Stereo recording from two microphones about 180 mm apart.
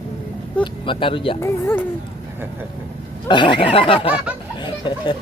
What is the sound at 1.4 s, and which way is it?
Speech, 10° left (ahead or behind).